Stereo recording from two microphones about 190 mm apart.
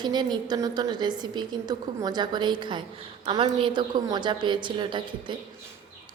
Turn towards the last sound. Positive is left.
turn(degrees=-25)  # may be behind; listen again after turning